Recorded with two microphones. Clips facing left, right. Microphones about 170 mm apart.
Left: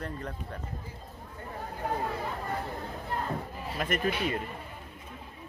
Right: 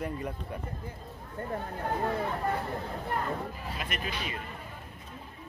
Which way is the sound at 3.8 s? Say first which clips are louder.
Left 8 dB; 55° left (ahead or behind).